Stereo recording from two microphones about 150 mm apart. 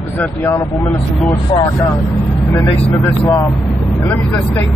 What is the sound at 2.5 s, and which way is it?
A man's voice, 15° left (ahead or behind).